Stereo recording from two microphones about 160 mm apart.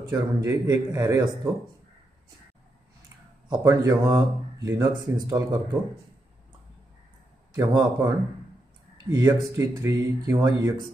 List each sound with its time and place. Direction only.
0.1 s speech: 20° right (ahead or behind)
3.4 s speech: 20° right (ahead or behind)
7.5 s speech: 20° right (ahead or behind)
9.1 s speech: 20° right (ahead or behind)